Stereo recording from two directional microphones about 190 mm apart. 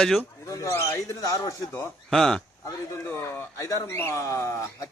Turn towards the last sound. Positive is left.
turn(degrees=15)  # may be behind; listen again after turning